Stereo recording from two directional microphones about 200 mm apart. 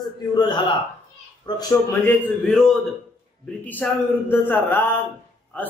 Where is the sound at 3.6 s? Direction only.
10° left (ahead or behind).